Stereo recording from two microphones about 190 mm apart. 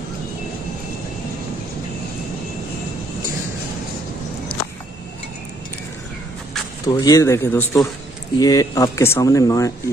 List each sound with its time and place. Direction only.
6.9 s speech: 20° left (ahead or behind)